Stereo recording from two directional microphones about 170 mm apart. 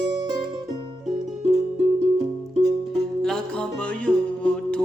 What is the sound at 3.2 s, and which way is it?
Music, 5° left (ahead or behind).